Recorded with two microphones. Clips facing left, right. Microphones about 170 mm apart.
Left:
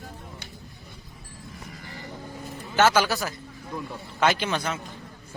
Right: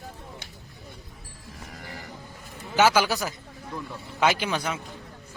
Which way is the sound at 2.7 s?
10° right (ahead or behind).